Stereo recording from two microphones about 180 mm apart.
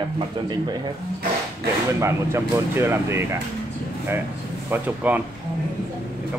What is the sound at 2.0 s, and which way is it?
Speech, 15° right (ahead or behind).